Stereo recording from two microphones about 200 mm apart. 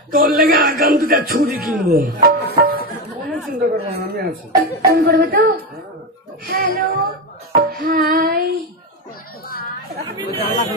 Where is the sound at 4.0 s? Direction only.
50° right (ahead or behind).